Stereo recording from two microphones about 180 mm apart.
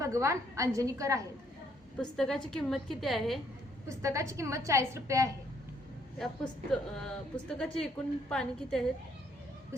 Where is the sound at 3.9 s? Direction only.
15° right (ahead or behind).